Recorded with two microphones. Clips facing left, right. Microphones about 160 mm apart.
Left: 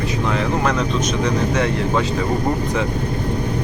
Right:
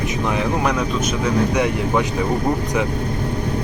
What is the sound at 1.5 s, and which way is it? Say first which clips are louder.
Speech: even; 15° right (ahead or behind).